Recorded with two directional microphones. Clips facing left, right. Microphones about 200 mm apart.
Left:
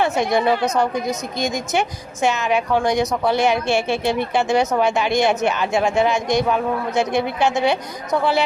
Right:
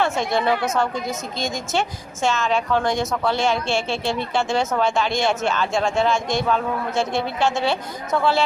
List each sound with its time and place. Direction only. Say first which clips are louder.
0.0 s a woman's voice: left 3 dB; 20° left (ahead or behind)